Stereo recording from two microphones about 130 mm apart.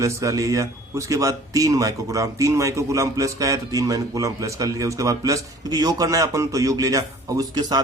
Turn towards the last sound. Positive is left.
turn(degrees=-30)  # may be behind; listen again after turning